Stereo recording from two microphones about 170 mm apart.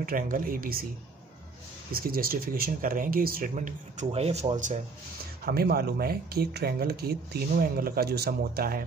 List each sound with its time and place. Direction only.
0.0 s speech: 55° right (ahead or behind)
1.9 s speech: 60° right (ahead or behind); by 4.8 s 45° right (ahead or behind)
5.4 s speech: 65° right (ahead or behind)